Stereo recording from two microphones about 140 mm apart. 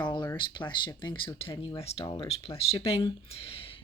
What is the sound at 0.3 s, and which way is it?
Speech, 35° left (ahead or behind).